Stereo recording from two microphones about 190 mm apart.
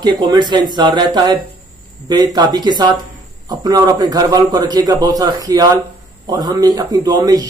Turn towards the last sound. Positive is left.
turn(degrees=-20)  # may be behind; listen again after turning